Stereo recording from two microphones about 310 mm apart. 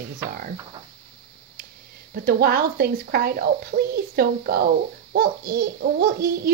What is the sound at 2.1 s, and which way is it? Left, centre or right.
A child's voice, right.